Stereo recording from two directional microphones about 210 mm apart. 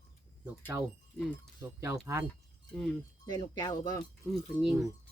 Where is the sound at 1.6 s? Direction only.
10° right (ahead or behind).